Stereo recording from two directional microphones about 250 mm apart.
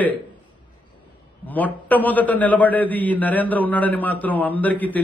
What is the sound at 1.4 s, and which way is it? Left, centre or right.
A man's voice, centre.